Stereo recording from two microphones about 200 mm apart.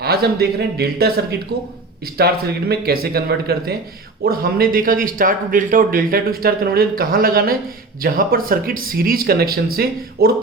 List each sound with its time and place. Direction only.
0.0 s speech: 50° right (ahead or behind)